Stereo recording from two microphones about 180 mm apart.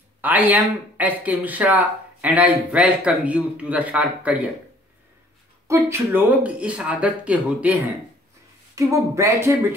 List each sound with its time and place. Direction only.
0.2 s speech: 10° right (ahead or behind)
5.7 s speech: 15° right (ahead or behind)